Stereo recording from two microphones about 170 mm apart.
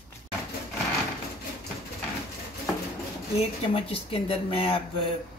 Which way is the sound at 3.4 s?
35° left (ahead or behind).